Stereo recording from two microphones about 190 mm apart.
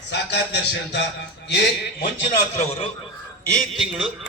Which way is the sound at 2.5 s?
35° left (ahead or behind).